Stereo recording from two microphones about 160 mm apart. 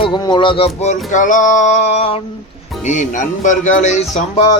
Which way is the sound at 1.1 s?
55° left (ahead or behind).